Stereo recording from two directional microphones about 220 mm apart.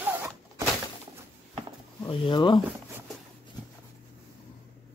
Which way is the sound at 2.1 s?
20° left (ahead or behind).